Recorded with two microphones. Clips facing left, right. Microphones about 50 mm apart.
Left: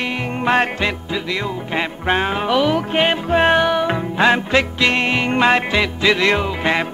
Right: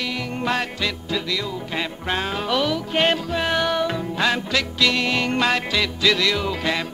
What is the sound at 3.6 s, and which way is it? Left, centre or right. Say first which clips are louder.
Music: left 4 dB; left.